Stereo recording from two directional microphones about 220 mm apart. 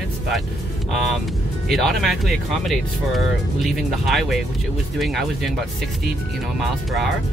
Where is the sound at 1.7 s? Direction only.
Centre (ahead or behind).